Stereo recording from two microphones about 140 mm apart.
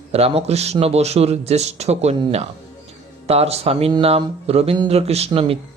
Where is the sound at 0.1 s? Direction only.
45° right (ahead or behind).